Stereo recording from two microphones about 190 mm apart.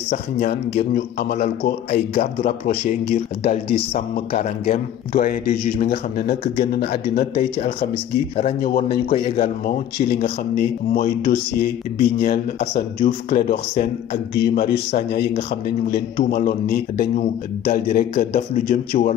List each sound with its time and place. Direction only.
0.1 s speech: 35° left (ahead or behind)
5.2 s a man's voice: 45° left (ahead or behind)
7.3 s speech: 30° left (ahead or behind)
8.5 s a man's voice: 50° left (ahead or behind)
8.8 s a man's voice: 30° left (ahead or behind)
9.4 s a man's voice: 50° left (ahead or behind)
14.3 s a man's voice: 60° left (ahead or behind); by 19.1 s 45° left (ahead or behind)